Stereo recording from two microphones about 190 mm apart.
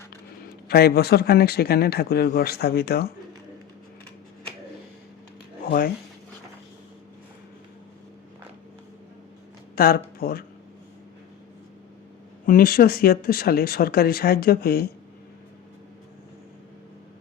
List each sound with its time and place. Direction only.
0.7 s speech: 55° left (ahead or behind)
5.6 s speech: 50° left (ahead or behind)
9.7 s speech: 50° left (ahead or behind)
12.5 s speech: 50° left (ahead or behind)